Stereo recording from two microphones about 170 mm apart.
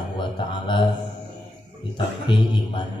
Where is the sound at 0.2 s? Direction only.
30° left (ahead or behind).